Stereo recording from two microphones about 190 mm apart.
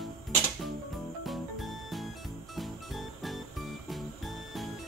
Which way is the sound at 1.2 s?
Centre (ahead or behind).